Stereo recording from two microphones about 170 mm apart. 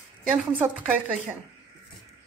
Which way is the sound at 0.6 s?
10° right (ahead or behind).